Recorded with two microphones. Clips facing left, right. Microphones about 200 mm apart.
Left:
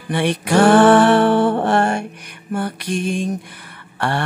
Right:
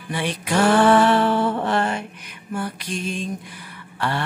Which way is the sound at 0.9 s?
70° left (ahead or behind).